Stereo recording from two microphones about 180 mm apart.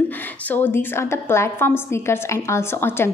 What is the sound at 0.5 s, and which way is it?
A woman's voice, 10° left (ahead or behind).